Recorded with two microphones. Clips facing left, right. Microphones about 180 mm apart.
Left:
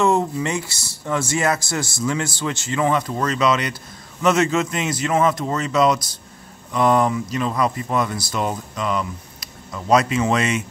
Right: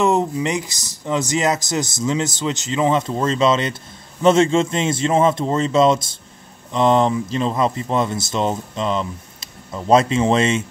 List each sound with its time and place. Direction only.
0.0 s speech: 20° right (ahead or behind)